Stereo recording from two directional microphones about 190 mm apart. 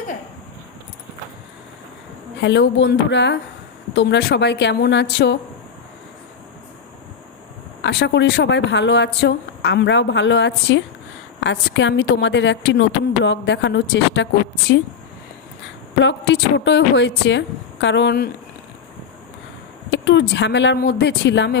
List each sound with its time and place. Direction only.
2.3 s a woman's voice: 65° left (ahead or behind)
7.8 s a woman's voice: 65° left (ahead or behind)
19.9 s a woman's voice: 70° left (ahead or behind)